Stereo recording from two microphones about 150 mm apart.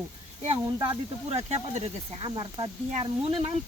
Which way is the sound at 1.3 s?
45° right (ahead or behind).